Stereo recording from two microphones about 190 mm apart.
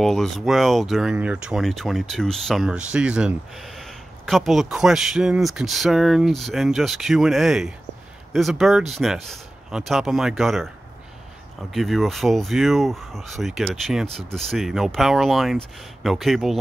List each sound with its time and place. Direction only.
0.0 s speech: centre (ahead or behind)
11.7 s speech: centre (ahead or behind)